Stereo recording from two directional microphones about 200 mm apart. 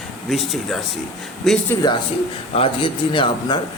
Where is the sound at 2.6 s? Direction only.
25° left (ahead or behind).